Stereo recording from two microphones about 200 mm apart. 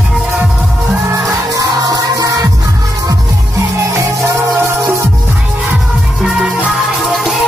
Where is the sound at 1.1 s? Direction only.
15° right (ahead or behind).